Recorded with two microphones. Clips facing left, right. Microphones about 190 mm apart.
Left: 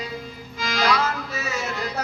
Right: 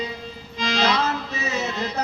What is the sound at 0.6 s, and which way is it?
Music, 25° right (ahead or behind).